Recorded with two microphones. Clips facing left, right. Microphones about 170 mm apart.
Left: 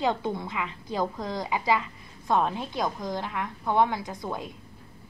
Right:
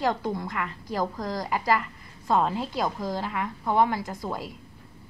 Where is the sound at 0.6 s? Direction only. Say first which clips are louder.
Left 1 dB; 20° left (ahead or behind).